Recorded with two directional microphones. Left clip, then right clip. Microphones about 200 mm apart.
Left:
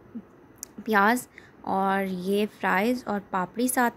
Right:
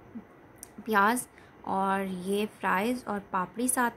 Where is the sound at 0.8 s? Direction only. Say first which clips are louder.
Left 3 dB; 20° left (ahead or behind).